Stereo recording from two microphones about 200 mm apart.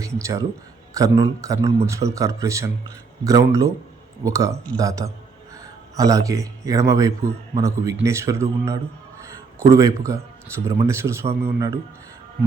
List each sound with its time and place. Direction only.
0.0 s speech: 15° right (ahead or behind)